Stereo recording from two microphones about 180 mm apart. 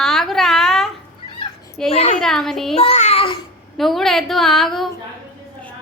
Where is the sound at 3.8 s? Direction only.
Centre (ahead or behind).